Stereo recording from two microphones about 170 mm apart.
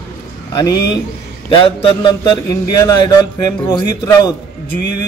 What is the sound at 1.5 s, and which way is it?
A man's voice, 30° left (ahead or behind).